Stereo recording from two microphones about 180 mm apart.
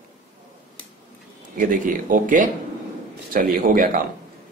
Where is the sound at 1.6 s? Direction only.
50° right (ahead or behind).